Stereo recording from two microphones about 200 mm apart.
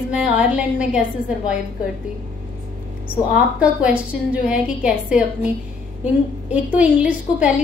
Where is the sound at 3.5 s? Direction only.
5° right (ahead or behind).